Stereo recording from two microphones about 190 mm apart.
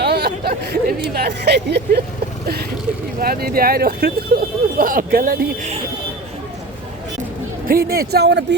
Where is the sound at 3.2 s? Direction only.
50° right (ahead or behind).